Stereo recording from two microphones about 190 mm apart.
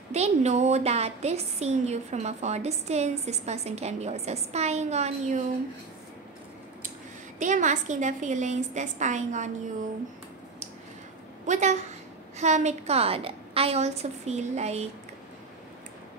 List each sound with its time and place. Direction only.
0.1 s a woman's voice: 35° right (ahead or behind)
7.3 s a woman's voice: 40° right (ahead or behind)
11.4 s a woman's voice: 40° right (ahead or behind)